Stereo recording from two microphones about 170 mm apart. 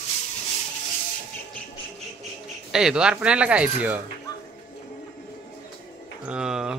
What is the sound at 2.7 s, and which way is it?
Speech, 5° right (ahead or behind).